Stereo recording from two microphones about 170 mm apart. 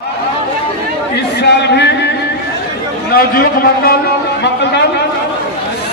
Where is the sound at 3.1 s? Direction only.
60° left (ahead or behind).